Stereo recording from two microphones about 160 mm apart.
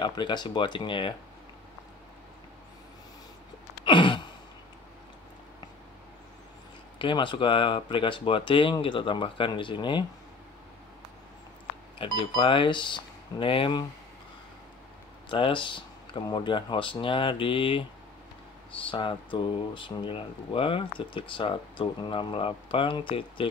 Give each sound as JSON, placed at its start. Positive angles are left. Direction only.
{"t": 0.0, "sound": "speech", "side_deg": 25}
{"t": 3.8, "sound": "sigh", "side_deg": 30}
{"t": 7.0, "sound": "speech", "side_deg": 30}
{"t": 12.0, "sound": "speech", "side_deg": 30}
{"t": 15.2, "sound": "speech", "side_deg": 30}